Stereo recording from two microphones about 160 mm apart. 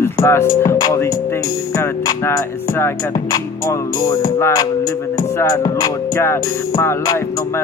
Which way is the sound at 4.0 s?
25° left (ahead or behind).